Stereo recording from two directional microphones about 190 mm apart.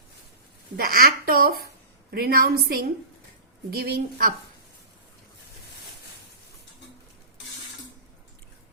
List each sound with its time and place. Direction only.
0.8 s a woman's voice: 50° right (ahead or behind)